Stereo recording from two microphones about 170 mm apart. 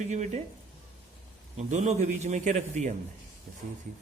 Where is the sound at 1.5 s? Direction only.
40° right (ahead or behind).